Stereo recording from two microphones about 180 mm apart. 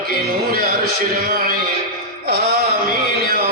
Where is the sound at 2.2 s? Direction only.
55° right (ahead or behind).